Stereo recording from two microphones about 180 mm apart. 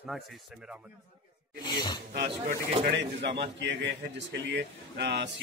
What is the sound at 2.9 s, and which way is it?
A man's voice, 70° right (ahead or behind).